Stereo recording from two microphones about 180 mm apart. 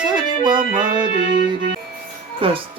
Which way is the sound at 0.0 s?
25° right (ahead or behind).